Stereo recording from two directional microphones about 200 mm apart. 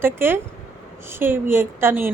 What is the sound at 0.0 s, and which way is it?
A woman's voice, 10° right (ahead or behind).